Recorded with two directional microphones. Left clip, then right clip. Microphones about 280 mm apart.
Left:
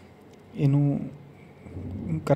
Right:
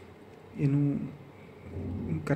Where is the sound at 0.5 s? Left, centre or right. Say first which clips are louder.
Left 4 dB; left.